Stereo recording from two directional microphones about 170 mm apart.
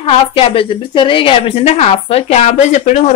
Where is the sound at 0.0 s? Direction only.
35° left (ahead or behind).